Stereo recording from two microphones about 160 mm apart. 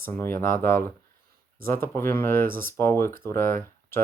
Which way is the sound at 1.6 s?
15° left (ahead or behind).